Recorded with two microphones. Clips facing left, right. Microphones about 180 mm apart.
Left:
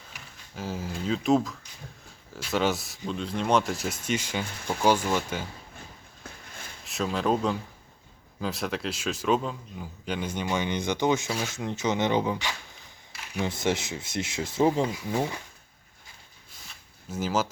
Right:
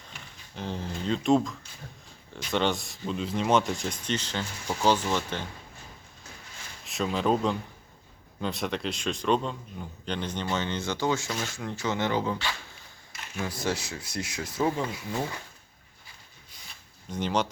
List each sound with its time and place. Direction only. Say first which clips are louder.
0.1 s a man's voice: right 1 dB; 5° left (ahead or behind)
6.8 s a man's voice: even; centre (ahead or behind); by 11.3 s 20° left (ahead or behind)
11.3 s speech: left 2 dB; 10° left (ahead or behind)
11.5 s speech: left 4 dB; 20° left (ahead or behind)
16.6 s a sound: even; 5° left (ahead or behind)